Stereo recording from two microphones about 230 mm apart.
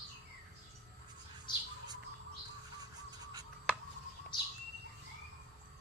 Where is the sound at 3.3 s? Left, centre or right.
Centre.